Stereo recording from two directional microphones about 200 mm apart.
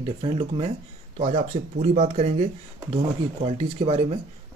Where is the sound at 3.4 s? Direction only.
30° right (ahead or behind).